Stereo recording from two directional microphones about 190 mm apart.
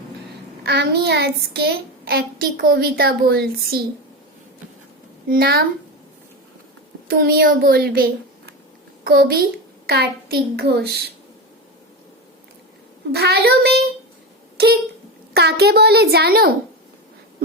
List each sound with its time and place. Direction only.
0.6 s a child's voice: 60° right (ahead or behind)
5.3 s a woman's voice: 55° right (ahead or behind)
7.1 s a child's voice: 55° right (ahead or behind)
13.1 s a child's voice: 60° right (ahead or behind)